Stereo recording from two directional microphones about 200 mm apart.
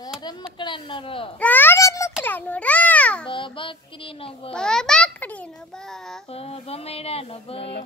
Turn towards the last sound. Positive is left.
turn(degrees=30)  # may be behind; listen again after turning